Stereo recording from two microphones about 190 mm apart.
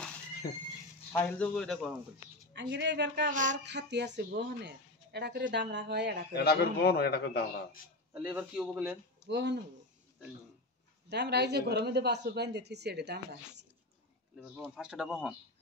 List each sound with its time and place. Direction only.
1.1 s a man's voice: 5° left (ahead or behind)
2.6 s speech: 65° right (ahead or behind)
3.3 s speech: 40° right (ahead or behind)
3.6 s speech: 65° right (ahead or behind)
6.3 s a man's voice: 55° left (ahead or behind)
8.1 s a man's voice: 5° right (ahead or behind)
9.2 s speech: 65° right (ahead or behind)
11.1 s speech: 60° right (ahead or behind)
14.6 s a man's voice: 5° right (ahead or behind)